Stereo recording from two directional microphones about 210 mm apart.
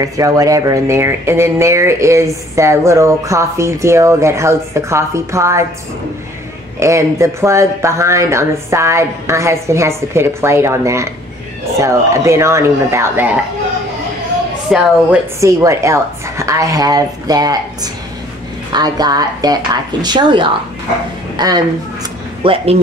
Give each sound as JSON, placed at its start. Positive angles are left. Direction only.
{"t": 0.0, "sound": "speech", "side_deg": -15}
{"t": 6.8, "sound": "speech", "side_deg": -15}
{"t": 14.7, "sound": "a woman's voice", "side_deg": 0}
{"t": 15.4, "sound": "speech", "side_deg": -15}
{"t": 18.7, "sound": "a woman's voice", "side_deg": -20}